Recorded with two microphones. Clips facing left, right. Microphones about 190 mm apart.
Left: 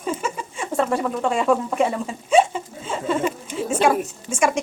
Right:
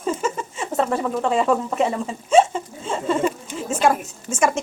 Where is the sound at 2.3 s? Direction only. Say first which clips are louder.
Right 1 dB; 5° left (ahead or behind).